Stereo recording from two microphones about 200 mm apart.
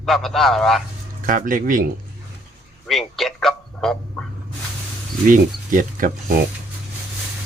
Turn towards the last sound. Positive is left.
turn(degrees=-45)  # may be behind; listen again after turning